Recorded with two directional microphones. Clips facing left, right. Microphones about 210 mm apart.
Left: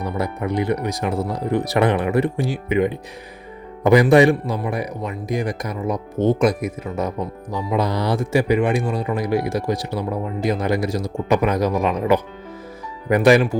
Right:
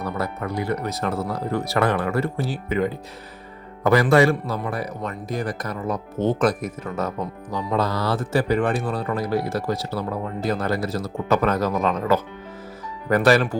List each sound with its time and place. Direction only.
0.0 s speech: 15° left (ahead or behind)